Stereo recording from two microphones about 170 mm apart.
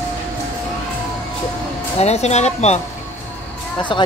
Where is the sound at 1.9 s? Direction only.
40° left (ahead or behind).